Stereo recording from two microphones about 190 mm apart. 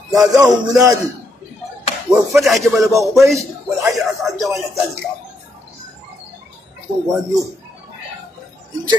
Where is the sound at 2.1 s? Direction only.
5° right (ahead or behind).